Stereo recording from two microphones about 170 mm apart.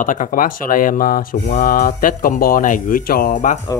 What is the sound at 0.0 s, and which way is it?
Speech, 50° left (ahead or behind).